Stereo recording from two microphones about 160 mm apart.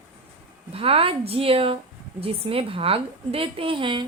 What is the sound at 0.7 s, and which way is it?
A woman's voice, 35° right (ahead or behind).